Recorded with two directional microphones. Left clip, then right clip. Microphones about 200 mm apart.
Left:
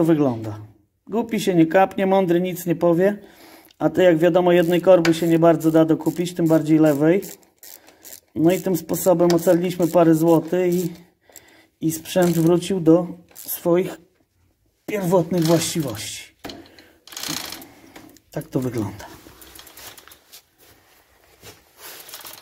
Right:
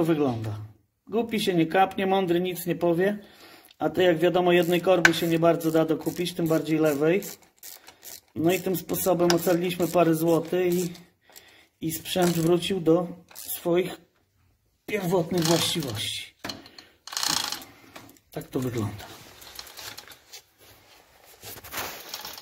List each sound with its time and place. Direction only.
0.0 s speech: 25° left (ahead or behind)
8.4 s speech: 25° left (ahead or behind)
11.8 s speech: 25° left (ahead or behind)
18.3 s speech: 30° left (ahead or behind)